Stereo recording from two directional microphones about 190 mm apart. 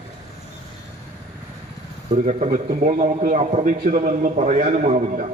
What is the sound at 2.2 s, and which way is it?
A man's voice, 40° right (ahead or behind).